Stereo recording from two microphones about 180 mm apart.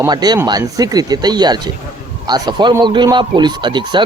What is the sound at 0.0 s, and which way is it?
Speech, 20° right (ahead or behind).